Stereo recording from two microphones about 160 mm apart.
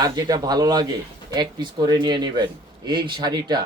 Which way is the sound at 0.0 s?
25° right (ahead or behind).